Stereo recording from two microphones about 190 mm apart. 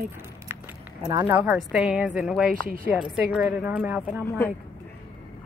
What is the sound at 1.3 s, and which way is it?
A woman's voice, 5° right (ahead or behind).